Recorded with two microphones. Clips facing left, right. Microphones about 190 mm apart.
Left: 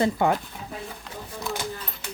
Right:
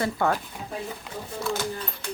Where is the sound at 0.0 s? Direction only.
20° left (ahead or behind).